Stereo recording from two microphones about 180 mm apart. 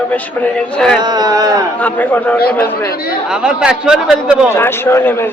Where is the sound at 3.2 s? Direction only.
5° right (ahead or behind).